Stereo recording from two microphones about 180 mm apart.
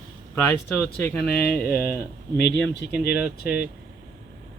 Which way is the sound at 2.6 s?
65° left (ahead or behind).